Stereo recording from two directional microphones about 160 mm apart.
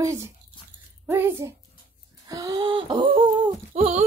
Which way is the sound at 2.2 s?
25° right (ahead or behind).